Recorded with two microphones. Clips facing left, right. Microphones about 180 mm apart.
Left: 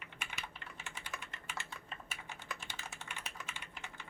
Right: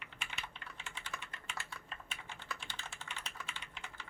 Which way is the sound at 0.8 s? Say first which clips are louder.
Even; 5° left (ahead or behind).